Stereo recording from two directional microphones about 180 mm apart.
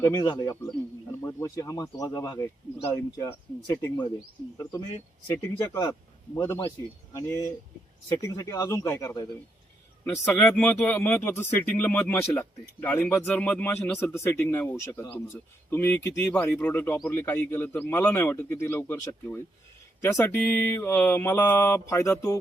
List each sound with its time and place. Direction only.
0.0 s speech: 20° left (ahead or behind)
5.8 s a man's voice: 15° left (ahead or behind)